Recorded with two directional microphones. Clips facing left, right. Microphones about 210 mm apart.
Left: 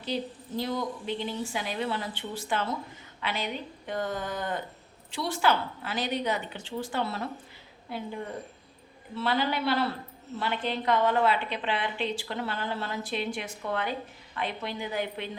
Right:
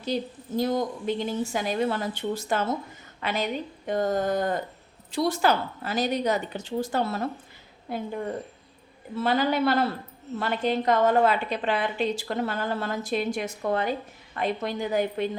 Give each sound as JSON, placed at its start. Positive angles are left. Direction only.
{"t": 0.0, "sound": "a woman's voice", "side_deg": -45}
{"t": 9.1, "sound": "a woman's voice", "side_deg": -45}